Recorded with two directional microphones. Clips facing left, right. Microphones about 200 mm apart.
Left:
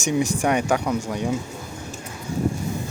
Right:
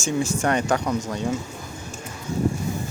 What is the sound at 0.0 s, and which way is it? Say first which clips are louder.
Speech: left 2 dB; 15° left (ahead or behind).